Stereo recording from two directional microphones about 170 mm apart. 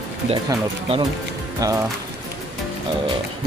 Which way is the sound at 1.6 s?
20° right (ahead or behind).